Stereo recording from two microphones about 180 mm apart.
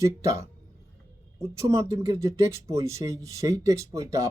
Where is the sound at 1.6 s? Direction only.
15° right (ahead or behind).